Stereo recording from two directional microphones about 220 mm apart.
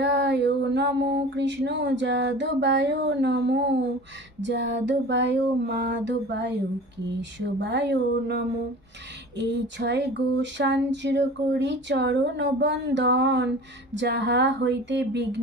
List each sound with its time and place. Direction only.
0.0 s a sound: 55° right (ahead or behind)
4.4 s female singing: 55° right (ahead or behind)
9.4 s female singing: 55° right (ahead or behind)